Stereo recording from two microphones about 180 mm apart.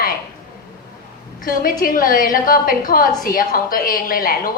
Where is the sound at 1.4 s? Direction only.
50° left (ahead or behind).